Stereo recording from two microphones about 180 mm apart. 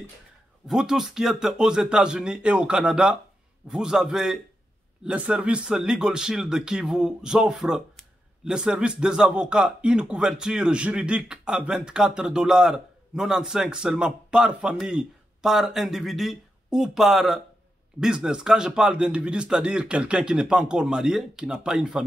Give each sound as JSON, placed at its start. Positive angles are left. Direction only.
{"t": 0.7, "sound": "speech", "side_deg": 0}